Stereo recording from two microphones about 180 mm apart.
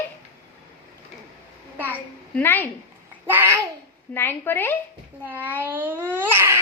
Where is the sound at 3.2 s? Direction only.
10° right (ahead or behind).